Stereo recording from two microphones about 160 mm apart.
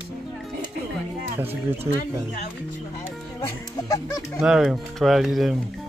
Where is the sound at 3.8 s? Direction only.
20° left (ahead or behind).